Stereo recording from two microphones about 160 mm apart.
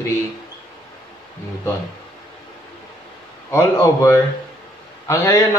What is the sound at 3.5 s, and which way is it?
Speech, 20° left (ahead or behind).